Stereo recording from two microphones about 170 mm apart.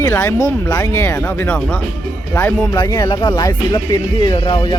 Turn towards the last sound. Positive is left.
turn(degrees=30)  # may be behind; listen again after turning